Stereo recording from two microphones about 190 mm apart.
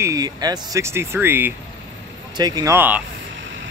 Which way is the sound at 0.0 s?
20° right (ahead or behind).